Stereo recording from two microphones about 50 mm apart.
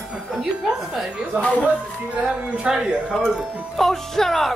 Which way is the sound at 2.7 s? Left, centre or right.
Centre.